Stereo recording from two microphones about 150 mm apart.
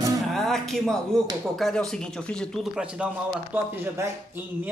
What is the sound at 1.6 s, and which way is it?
Speech, centre (ahead or behind).